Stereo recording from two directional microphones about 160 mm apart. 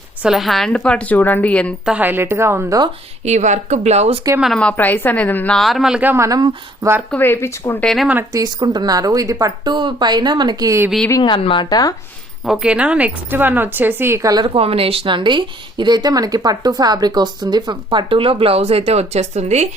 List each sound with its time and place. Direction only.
0.2 s a woman's voice: centre (ahead or behind)
1.8 s a woman's voice: 10° right (ahead or behind)
3.2 s speech: 50° right (ahead or behind)
4.4 s a woman's voice: centre (ahead or behind); by 7.0 s 20° right (ahead or behind)
7.1 s a woman's voice: 15° left (ahead or behind)
7.9 s a woman's voice: centre (ahead or behind)
8.1 s speech: 20° right (ahead or behind)
11.2 s a woman's voice: 30° left (ahead or behind)
12.5 s speech: 5° right (ahead or behind); by 19.6 s 45° right (ahead or behind)